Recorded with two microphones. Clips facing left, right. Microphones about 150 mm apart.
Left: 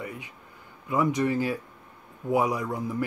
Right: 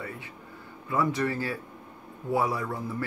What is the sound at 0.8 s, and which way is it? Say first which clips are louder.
Speech: left 2 dB; 15° left (ahead or behind).